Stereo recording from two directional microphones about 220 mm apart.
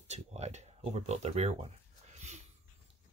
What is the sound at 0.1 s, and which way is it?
Speech, 30° right (ahead or behind).